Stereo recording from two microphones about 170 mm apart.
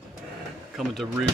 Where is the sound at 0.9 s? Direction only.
Centre (ahead or behind).